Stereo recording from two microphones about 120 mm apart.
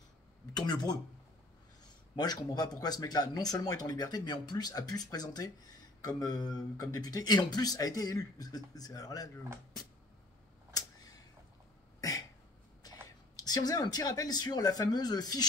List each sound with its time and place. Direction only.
0.6 s speech: 35° left (ahead or behind)
2.1 s speech: 35° left (ahead or behind)
12.0 s cough: 30° left (ahead or behind)
12.8 s a sound: 30° left (ahead or behind)
13.4 s speech: 35° left (ahead or behind)